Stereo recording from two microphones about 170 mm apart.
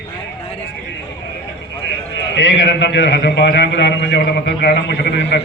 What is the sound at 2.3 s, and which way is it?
A man's voice, 90° left.